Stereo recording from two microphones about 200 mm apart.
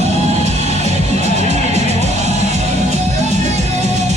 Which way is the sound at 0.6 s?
35° right (ahead or behind).